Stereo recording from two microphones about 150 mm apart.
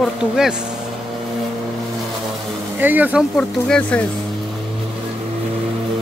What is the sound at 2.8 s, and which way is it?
Speech, 10° right (ahead or behind).